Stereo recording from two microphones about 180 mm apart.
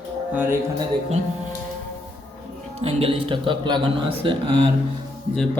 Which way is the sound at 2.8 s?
30° right (ahead or behind).